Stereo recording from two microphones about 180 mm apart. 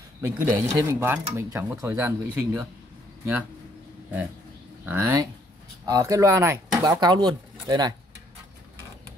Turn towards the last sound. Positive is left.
turn(degrees=-20)  # may be behind; listen again after turning